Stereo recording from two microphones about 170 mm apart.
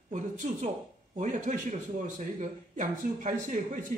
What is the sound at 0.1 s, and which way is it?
A man's voice, 50° right (ahead or behind).